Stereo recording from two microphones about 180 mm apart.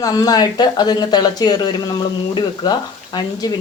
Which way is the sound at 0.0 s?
20° left (ahead or behind).